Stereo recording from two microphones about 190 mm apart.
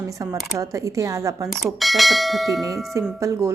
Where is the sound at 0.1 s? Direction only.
15° right (ahead or behind).